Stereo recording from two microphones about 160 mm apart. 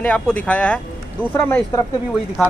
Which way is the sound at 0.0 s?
10° left (ahead or behind).